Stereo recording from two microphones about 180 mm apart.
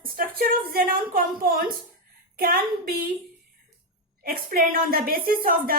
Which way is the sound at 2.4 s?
55° right (ahead or behind).